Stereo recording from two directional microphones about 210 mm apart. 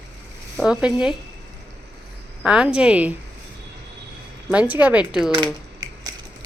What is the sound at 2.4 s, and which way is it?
Speech, 5° right (ahead or behind).